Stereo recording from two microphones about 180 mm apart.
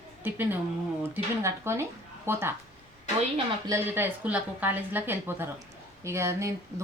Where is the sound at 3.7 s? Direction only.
15° right (ahead or behind).